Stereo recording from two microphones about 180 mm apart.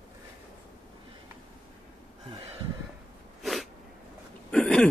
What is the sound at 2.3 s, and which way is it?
Gasp, 35° right (ahead or behind).